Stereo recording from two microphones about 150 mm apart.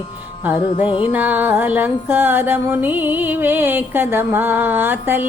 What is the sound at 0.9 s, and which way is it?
Music, 35° left (ahead or behind).